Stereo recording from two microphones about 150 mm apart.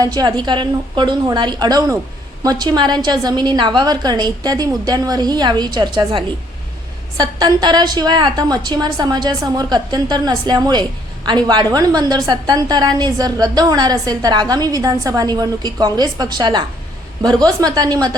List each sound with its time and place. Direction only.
0.0 s a woman's voice: 25° right (ahead or behind)